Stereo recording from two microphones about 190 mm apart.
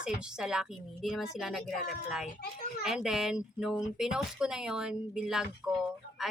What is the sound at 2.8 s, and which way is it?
Speech, 5° right (ahead or behind).